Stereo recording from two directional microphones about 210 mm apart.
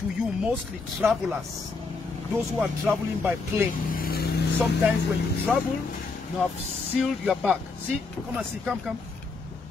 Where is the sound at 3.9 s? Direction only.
45° left (ahead or behind).